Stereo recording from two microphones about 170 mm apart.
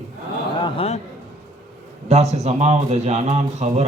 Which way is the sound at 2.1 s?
40° right (ahead or behind).